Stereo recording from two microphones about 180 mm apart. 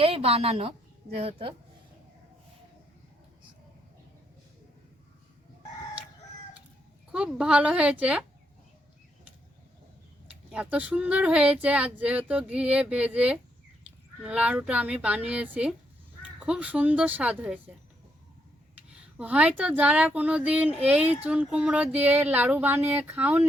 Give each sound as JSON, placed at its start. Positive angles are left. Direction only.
{"t": 0.0, "sound": "a woman's voice", "side_deg": -30}
{"t": 7.1, "sound": "a woman's voice", "side_deg": -5}
{"t": 10.5, "sound": "speech", "side_deg": -5}
{"t": 19.1, "sound": "speech", "side_deg": -5}